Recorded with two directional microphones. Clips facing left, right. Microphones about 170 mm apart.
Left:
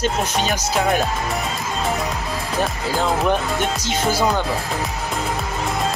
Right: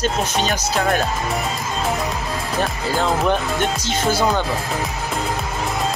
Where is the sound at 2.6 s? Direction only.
Centre (ahead or behind).